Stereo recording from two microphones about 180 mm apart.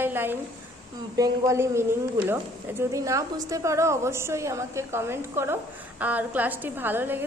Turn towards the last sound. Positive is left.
turn(degrees=-10)  # may be behind; listen again after turning